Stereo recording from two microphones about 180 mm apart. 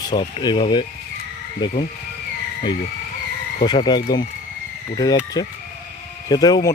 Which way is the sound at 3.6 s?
25° left (ahead or behind).